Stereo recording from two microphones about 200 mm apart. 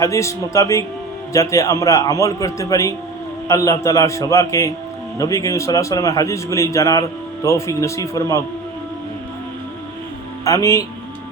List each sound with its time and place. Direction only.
0.0 s a man's voice: 15° left (ahead or behind)
10.4 s a man's voice: 15° left (ahead or behind)